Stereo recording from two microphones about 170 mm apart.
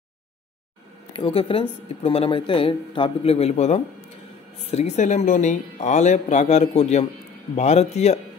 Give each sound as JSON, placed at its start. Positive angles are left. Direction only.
{"t": 1.1, "sound": "speech", "side_deg": 30}